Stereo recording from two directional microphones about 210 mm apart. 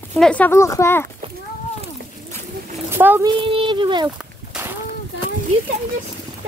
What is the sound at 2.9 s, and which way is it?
Speech, 10° right (ahead or behind).